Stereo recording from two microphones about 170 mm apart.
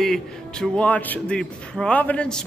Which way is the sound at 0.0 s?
5° left (ahead or behind).